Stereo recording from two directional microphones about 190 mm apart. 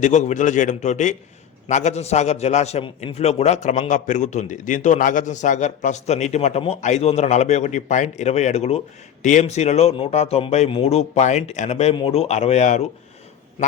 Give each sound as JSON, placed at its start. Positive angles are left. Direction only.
{"t": 0.0, "sound": "a man's voice", "side_deg": 40}